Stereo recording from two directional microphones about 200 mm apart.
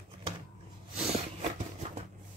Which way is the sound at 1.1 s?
35° right (ahead or behind).